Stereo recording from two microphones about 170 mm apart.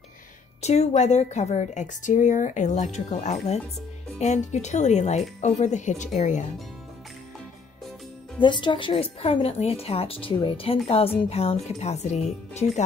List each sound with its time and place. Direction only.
0.6 s a woman's voice: 40° left (ahead or behind)
8.4 s a woman's voice: 30° left (ahead or behind)